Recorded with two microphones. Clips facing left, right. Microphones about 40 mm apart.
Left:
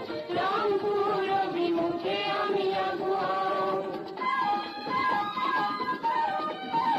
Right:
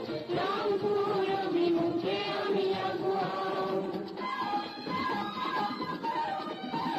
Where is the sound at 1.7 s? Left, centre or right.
Centre.